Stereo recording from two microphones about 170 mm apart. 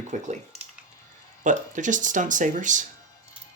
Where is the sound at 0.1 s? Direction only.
50° right (ahead or behind).